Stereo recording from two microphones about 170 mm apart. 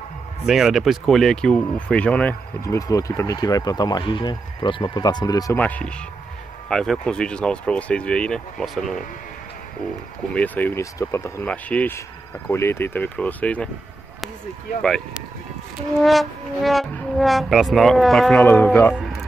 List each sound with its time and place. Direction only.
0.5 s speech: centre (ahead or behind)
2.6 s speech: 20° left (ahead or behind)
5.6 s speech: 10° left (ahead or behind)
10.3 s speech: 10° left (ahead or behind)
14.8 s speech: 5° left (ahead or behind)
18.4 s speech: 10° left (ahead or behind)